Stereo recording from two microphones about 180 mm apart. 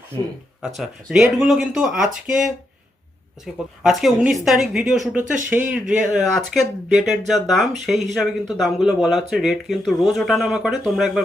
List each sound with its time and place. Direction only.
0.8 s speech: centre (ahead or behind)
5.2 s speech: 45° right (ahead or behind)
5.9 s speech: centre (ahead or behind)